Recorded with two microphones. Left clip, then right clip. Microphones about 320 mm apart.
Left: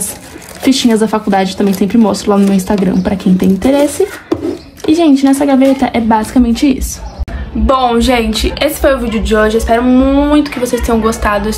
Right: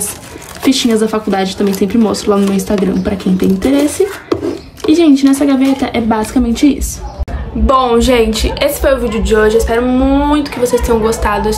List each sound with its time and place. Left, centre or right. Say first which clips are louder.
0.6 s speech: left 1 dB; centre
4.8 s speech: even; centre
7.6 s a woman's voice: even; centre